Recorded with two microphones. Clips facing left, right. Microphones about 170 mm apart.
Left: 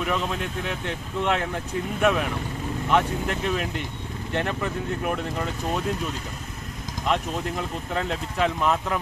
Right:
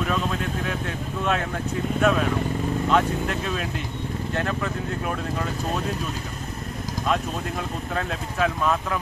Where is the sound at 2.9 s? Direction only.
20° left (ahead or behind).